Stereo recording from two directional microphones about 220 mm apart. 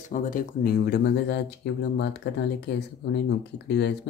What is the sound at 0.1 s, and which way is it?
Speech, 35° left (ahead or behind).